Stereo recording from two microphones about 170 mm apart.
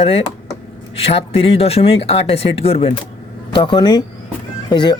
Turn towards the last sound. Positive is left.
turn(degrees=25)  # may be behind; listen again after turning